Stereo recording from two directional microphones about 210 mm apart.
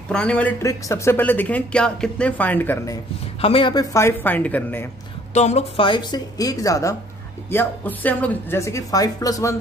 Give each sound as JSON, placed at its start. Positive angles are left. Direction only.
{"t": 0.1, "sound": "speech", "side_deg": 5}
{"t": 3.3, "sound": "speech", "side_deg": 25}
{"t": 5.3, "sound": "speech", "side_deg": 30}